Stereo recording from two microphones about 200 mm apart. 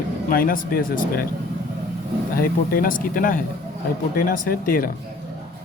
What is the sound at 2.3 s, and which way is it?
Speech, 45° left (ahead or behind).